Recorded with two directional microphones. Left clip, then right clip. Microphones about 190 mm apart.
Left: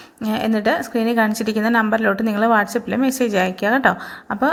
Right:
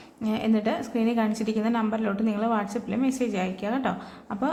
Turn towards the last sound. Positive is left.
turn(degrees=30)  # may be behind; listen again after turning